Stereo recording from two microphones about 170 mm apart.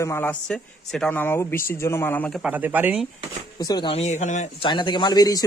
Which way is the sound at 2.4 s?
10° right (ahead or behind).